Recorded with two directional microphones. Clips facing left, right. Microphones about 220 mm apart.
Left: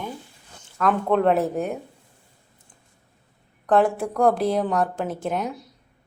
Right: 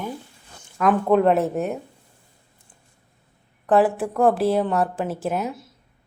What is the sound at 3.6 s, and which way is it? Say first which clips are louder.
Speech: right 1 dB; 5° right (ahead or behind).